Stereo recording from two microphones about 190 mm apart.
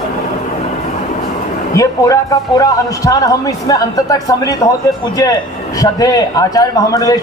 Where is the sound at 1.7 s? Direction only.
20° left (ahead or behind).